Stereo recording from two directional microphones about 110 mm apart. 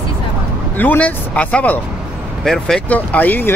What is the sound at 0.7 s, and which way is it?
Speech, 15° left (ahead or behind).